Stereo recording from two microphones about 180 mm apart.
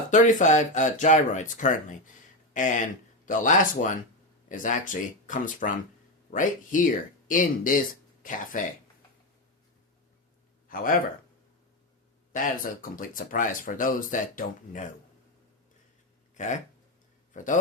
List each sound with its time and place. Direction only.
0.1 s speech: 45° left (ahead or behind)
10.7 s speech: 50° left (ahead or behind)
12.3 s speech: 50° left (ahead or behind)
16.3 s speech: 40° left (ahead or behind)